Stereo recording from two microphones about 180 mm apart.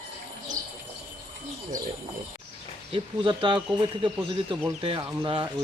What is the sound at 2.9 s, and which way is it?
Speech, 25° right (ahead or behind).